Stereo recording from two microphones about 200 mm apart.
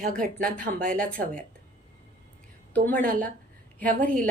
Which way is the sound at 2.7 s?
10° left (ahead or behind).